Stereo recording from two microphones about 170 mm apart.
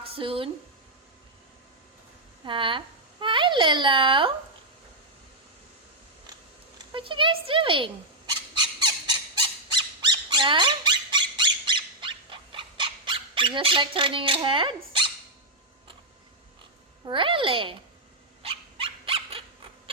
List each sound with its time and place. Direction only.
0.0 s speech: 35° right (ahead or behind)
2.4 s a child's voice: 30° right (ahead or behind)
6.9 s a child's voice: 30° right (ahead or behind)
8.5 s squawk: 30° right (ahead or behind)
9.7 s squeak: 25° right (ahead or behind)
17.1 s a child's voice: 30° right (ahead or behind)
18.4 s dog: 35° right (ahead or behind)